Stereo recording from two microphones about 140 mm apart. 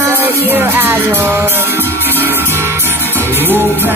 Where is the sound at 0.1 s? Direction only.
15° right (ahead or behind).